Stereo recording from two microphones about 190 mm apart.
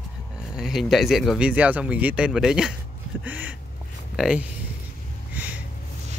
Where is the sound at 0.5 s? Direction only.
Centre (ahead or behind).